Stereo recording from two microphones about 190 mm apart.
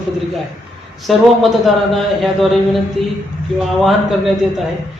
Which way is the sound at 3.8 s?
Centre (ahead or behind).